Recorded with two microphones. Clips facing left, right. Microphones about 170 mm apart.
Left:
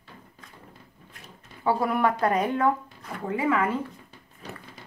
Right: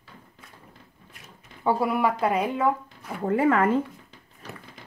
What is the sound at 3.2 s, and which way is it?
Speech, 45° right (ahead or behind).